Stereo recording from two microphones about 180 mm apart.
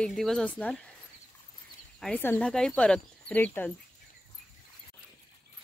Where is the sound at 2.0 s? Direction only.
5° left (ahead or behind).